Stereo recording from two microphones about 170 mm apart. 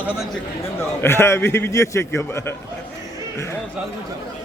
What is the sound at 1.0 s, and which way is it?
A man's voice, 15° left (ahead or behind).